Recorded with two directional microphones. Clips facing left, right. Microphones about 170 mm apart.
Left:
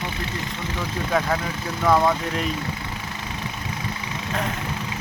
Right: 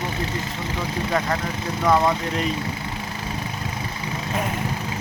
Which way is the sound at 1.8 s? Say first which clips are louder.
Even; centre (ahead or behind).